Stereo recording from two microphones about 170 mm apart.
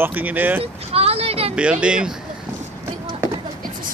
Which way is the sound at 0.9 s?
35° right (ahead or behind).